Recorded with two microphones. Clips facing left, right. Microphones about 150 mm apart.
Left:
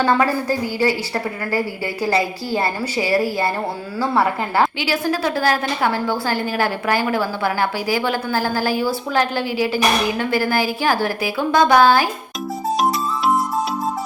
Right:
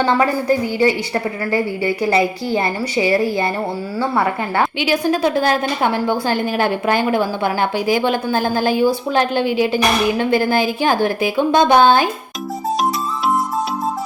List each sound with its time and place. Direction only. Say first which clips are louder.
0.0 s a woman's voice: right 1 dB; 20° right (ahead or behind)
4.8 s a woman's voice: right 4 dB; 20° right (ahead or behind)